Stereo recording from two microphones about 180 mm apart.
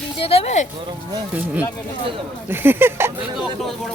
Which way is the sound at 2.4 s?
10° right (ahead or behind).